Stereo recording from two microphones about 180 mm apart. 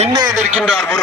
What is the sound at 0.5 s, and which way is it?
Speech, 5° right (ahead or behind).